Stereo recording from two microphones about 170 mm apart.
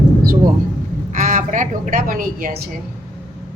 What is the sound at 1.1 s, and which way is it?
A woman's voice, 50° right (ahead or behind).